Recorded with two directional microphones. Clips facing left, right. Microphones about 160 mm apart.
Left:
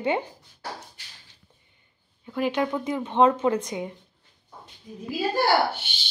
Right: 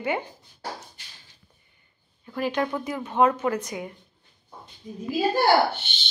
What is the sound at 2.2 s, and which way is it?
Speech, 15° left (ahead or behind).